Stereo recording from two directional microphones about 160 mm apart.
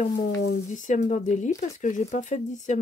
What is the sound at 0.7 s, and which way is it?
Speech, 50° left (ahead or behind).